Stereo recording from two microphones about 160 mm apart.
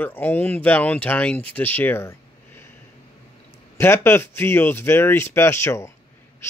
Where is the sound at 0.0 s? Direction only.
10° left (ahead or behind).